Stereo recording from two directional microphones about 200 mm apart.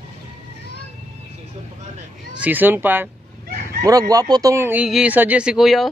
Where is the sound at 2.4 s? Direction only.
10° right (ahead or behind).